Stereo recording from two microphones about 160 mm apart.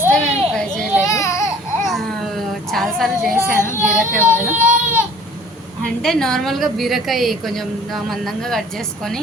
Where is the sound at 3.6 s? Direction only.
15° left (ahead or behind).